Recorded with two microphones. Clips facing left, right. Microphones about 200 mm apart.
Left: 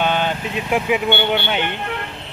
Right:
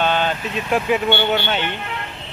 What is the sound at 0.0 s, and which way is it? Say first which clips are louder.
Speech: even; 15° left (ahead or behind).